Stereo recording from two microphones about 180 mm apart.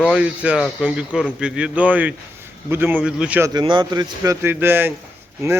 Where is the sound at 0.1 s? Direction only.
5° right (ahead or behind).